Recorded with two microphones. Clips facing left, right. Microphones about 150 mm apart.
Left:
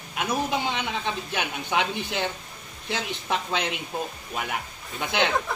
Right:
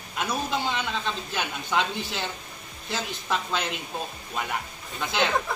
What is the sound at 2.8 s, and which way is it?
Speech, 65° left (ahead or behind).